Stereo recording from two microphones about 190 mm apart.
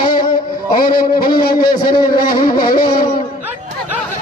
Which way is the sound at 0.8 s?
50° left (ahead or behind).